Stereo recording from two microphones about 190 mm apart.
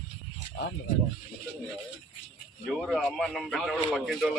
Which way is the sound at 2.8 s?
Centre (ahead or behind).